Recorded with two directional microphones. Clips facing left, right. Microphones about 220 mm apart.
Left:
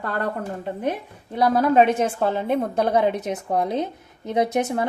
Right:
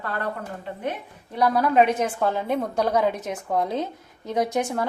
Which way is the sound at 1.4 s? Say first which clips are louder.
Left 2 dB; 25° left (ahead or behind).